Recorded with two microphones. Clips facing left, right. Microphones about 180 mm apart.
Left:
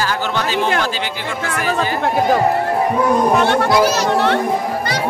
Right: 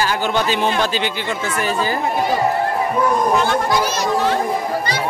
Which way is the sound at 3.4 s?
70° left (ahead or behind).